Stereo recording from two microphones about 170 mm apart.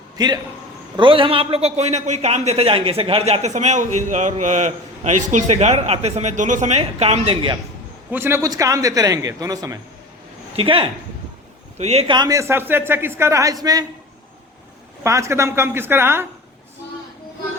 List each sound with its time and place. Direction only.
0.9 s a man's voice: 30° right (ahead or behind)
8.1 s a man's voice: 15° right (ahead or behind)
10.5 s a man's voice: 30° right (ahead or behind)
12.1 s speech: 20° right (ahead or behind)
15.0 s speech: 15° right (ahead or behind)